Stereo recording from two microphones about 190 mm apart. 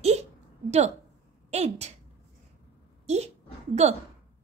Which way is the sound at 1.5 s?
35° right (ahead or behind).